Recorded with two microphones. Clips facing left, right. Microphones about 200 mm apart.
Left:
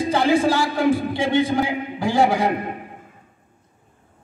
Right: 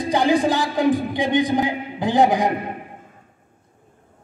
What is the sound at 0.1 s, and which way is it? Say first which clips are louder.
A man's voice: right 1 dB; 15° right (ahead or behind).